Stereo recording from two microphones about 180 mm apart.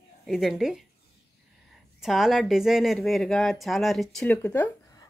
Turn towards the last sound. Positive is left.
turn(degrees=15)  # may be behind; listen again after turning